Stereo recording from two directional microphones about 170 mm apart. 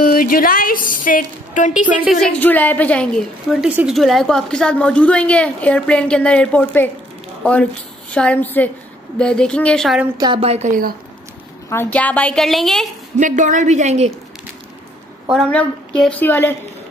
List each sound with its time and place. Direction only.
0.0 s a woman's voice: 55° left (ahead or behind)
2.0 s a woman's voice: 5° left (ahead or behind)
8.1 s a woman's voice: 5° left (ahead or behind)
10.1 s a woman's voice: 25° right (ahead or behind)
11.7 s a woman's voice: 10° left (ahead or behind)
13.2 s a woman's voice: 50° right (ahead or behind)
15.5 s a woman's voice: 5° left (ahead or behind)